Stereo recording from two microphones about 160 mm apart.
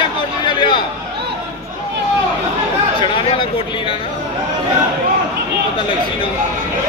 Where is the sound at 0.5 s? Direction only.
30° left (ahead or behind).